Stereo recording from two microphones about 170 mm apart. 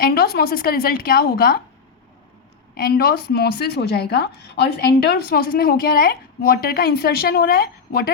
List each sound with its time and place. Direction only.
0.0 s a woman's voice: 65° left (ahead or behind)
2.7 s a woman's voice: 60° left (ahead or behind)